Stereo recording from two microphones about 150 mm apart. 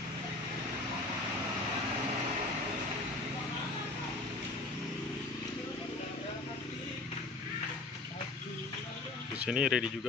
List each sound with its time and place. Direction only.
9.4 s speech: 5° right (ahead or behind)